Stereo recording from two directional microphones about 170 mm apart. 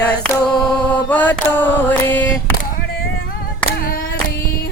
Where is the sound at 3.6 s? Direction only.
65° left (ahead or behind).